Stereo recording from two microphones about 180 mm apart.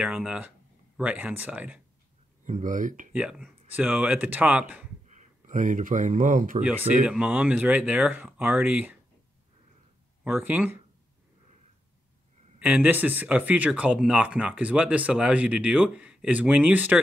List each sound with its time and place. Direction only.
0.0 s speech: 5° right (ahead or behind)
2.4 s speech: 45° right (ahead or behind)
3.1 s speech: 5° right (ahead or behind)
5.0 s speech: 45° right (ahead or behind)
6.6 s speech: 10° right (ahead or behind)
10.2 s speech: 10° right (ahead or behind)
12.5 s speech: 10° right (ahead or behind)